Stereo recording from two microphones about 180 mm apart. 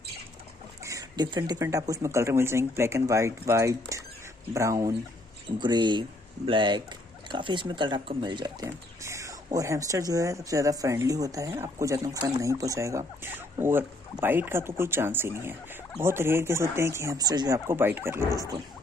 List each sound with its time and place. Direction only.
0.8 s speech: 20° right (ahead or behind)